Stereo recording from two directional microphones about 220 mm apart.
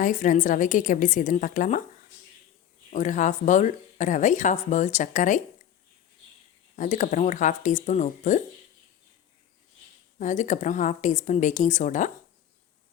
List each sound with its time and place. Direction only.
0.0 s speech: 35° left (ahead or behind)
2.9 s speech: 35° left (ahead or behind)
6.7 s speech: 35° left (ahead or behind)
10.2 s speech: 35° left (ahead or behind)